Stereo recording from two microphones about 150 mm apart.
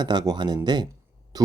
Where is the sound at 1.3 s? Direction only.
25° right (ahead or behind).